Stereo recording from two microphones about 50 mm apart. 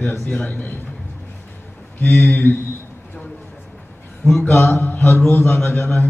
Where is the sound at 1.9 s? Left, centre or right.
Left.